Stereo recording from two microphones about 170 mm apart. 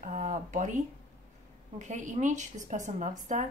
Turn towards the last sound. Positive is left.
turn(degrees=-45)  # may be behind; listen again after turning